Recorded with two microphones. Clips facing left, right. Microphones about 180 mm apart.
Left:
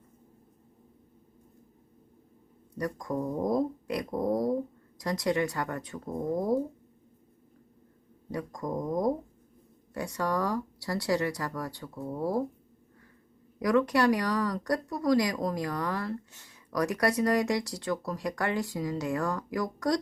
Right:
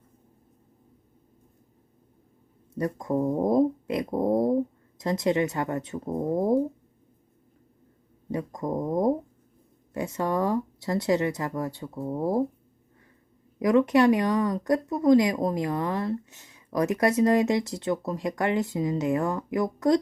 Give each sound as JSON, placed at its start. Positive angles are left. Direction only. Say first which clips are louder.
{"t": 2.7, "sound": "speech", "louder": "right 5 dB", "side_deg": -25}
{"t": 8.3, "sound": "speech", "louder": "right 4 dB", "side_deg": -20}
{"t": 13.6, "sound": "speech", "louder": "right 5 dB", "side_deg": -20}